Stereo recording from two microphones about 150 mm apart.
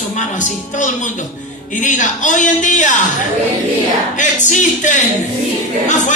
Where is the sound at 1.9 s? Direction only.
55° left (ahead or behind).